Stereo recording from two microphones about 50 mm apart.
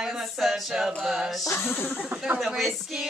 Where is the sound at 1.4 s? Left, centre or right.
Left.